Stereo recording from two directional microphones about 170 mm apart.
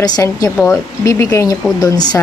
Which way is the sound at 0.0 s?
20° left (ahead or behind).